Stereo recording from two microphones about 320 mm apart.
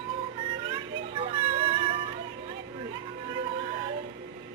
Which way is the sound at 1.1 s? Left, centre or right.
Centre.